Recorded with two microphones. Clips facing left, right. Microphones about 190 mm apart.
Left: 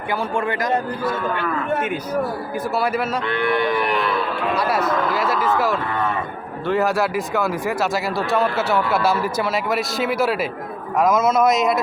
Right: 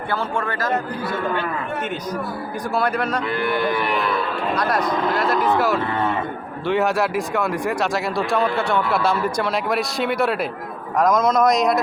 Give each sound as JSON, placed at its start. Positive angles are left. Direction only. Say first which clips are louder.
{"t": 0.1, "sound": "a man's voice", "louder": "left 3 dB", "side_deg": 15}
{"t": 2.7, "sound": "speech", "louder": "right 1 dB", "side_deg": 5}